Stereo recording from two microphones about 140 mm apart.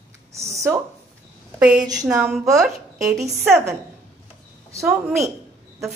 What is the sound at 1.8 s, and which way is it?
Speech, 25° right (ahead or behind).